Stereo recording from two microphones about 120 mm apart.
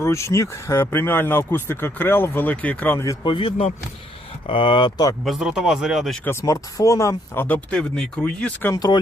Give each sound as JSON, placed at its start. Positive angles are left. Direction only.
{"t": 0.0, "sound": "speech", "side_deg": 25}
{"t": 3.2, "sound": "speech", "side_deg": 45}
{"t": 5.2, "sound": "a man's voice", "side_deg": -5}
{"t": 6.2, "sound": "speech", "side_deg": 25}
{"t": 8.7, "sound": "speech", "side_deg": 35}